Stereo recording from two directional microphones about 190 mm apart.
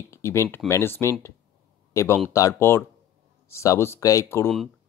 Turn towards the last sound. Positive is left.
turn(degrees=15)  # may be behind; listen again after turning